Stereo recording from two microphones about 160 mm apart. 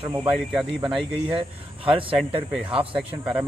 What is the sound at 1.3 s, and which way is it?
Speech, 35° right (ahead or behind).